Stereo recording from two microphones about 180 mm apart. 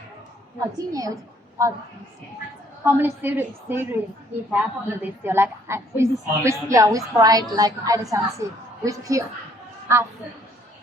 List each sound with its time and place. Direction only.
0.9 s a child's voice: 20° right (ahead or behind)
2.8 s a woman's voice: 10° right (ahead or behind)